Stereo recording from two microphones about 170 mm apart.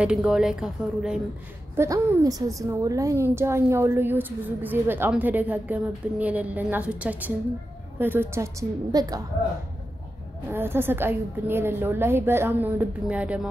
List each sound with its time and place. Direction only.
0.0 s a woman's voice: 5° right (ahead or behind)
1.8 s a woman's voice: 20° right (ahead or behind)
10.5 s a woman's voice: 15° right (ahead or behind)